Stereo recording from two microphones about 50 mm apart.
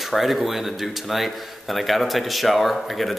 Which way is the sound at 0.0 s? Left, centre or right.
Centre.